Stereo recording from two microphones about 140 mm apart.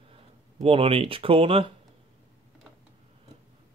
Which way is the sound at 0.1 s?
40° right (ahead or behind).